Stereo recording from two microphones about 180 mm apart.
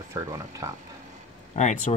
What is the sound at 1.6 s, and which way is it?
Speech, 40° left (ahead or behind).